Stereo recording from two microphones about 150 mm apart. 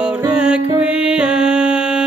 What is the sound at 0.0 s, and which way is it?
Music, 5° right (ahead or behind).